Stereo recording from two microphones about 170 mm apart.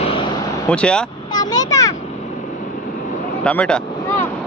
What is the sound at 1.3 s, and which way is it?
Speech, 25° left (ahead or behind).